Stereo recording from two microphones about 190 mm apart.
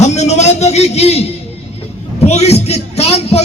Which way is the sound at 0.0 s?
35° left (ahead or behind).